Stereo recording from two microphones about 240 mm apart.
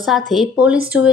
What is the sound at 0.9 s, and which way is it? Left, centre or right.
Speech, left.